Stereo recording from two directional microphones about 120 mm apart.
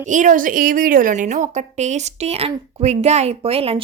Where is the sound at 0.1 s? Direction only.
90° right.